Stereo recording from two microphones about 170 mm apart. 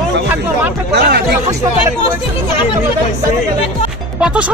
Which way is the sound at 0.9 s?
70° right (ahead or behind).